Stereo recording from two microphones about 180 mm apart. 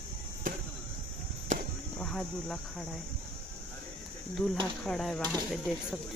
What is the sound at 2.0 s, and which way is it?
Speech, 5° left (ahead or behind).